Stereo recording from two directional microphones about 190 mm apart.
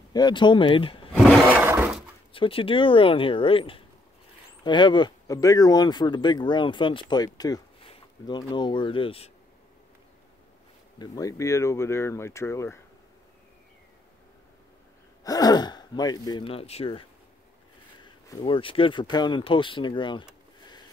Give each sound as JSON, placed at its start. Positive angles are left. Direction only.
{"t": 0.1, "sound": "speech", "side_deg": 25}
{"t": 1.1, "sound": "roar", "side_deg": 0}
{"t": 1.6, "sound": "breaking", "side_deg": -10}
{"t": 2.3, "sound": "speech", "side_deg": 30}
{"t": 11.0, "sound": "speech", "side_deg": 20}
{"t": 15.2, "sound": "speech", "side_deg": 20}
{"t": 18.0, "sound": "speech", "side_deg": 25}